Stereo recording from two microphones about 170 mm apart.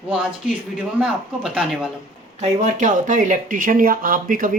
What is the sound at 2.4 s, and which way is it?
Speech, 45° right (ahead or behind).